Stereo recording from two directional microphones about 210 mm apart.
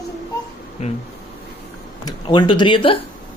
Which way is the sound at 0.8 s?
30° left (ahead or behind).